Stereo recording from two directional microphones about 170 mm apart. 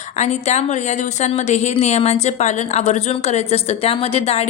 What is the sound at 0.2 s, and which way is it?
A woman's voice, 40° left (ahead or behind).